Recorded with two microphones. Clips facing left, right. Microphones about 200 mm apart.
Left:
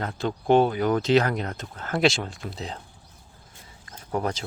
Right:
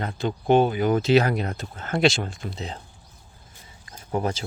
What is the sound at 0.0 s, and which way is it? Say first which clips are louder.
Speech: right 1 dB; centre (ahead or behind).